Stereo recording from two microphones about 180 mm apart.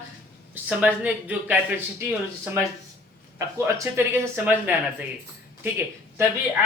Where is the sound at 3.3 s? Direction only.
15° right (ahead or behind).